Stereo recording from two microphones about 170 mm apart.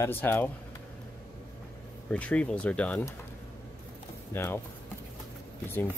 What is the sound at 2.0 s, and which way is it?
Speech, 5° left (ahead or behind).